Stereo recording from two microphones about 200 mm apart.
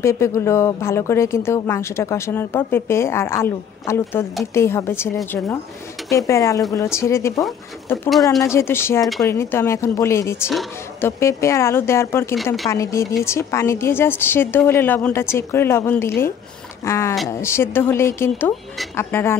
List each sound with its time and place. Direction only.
0.0 s speech: 15° left (ahead or behind)
8.1 s speech: centre (ahead or behind)
8.4 s speech: 15° left (ahead or behind)